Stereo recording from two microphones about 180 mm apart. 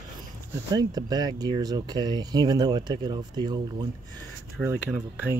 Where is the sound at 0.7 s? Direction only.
20° right (ahead or behind).